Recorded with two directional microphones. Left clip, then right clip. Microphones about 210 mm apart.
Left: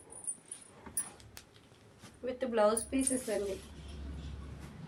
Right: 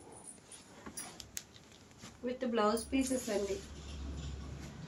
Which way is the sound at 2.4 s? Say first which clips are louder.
Left 3 dB; 40° left (ahead or behind).